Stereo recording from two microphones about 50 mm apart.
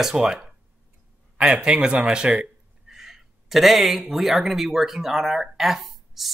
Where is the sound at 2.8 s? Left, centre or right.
Centre.